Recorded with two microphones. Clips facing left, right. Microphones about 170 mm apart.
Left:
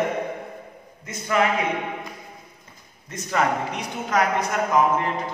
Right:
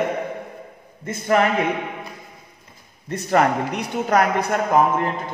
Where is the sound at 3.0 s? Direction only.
60° right (ahead or behind).